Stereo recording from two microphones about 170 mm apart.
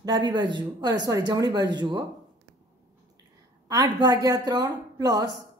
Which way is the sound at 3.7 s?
20° right (ahead or behind).